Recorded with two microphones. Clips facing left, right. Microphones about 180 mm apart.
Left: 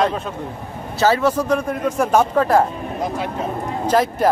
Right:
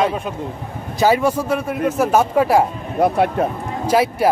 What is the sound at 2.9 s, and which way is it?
Speech, 65° right (ahead or behind).